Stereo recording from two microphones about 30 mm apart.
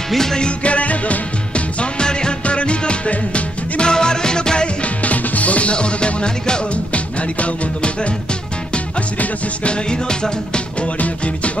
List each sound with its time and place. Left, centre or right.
0.1 s music: centre
0.4 s music: left
2.0 s music: left
2.4 s music: left
3.8 s music: left
4.8 s music: left
5.7 s music: left
6.7 s music: left
9.7 s music: left
11.0 s music: left